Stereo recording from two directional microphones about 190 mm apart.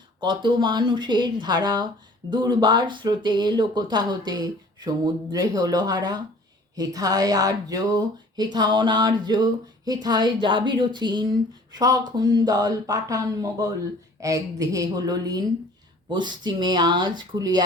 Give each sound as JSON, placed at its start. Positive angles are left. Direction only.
{"t": 0.2, "sound": "speech", "side_deg": -25}